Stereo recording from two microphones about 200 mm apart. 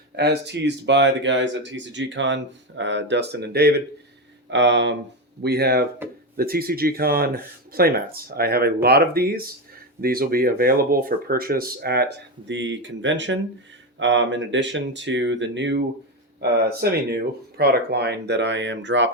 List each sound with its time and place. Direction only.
0.2 s speech: 60° right (ahead or behind)